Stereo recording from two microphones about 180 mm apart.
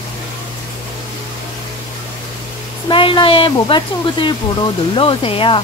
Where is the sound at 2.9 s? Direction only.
25° left (ahead or behind).